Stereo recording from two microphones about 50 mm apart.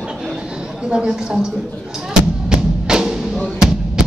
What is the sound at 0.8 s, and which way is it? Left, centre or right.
Speech, centre.